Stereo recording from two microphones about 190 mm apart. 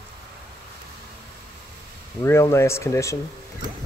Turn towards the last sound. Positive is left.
turn(degrees=15)  # may be behind; listen again after turning